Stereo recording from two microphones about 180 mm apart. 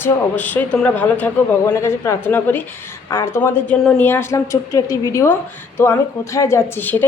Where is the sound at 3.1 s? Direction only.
20° left (ahead or behind).